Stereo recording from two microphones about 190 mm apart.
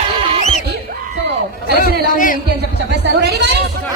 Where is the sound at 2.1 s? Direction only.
45° left (ahead or behind).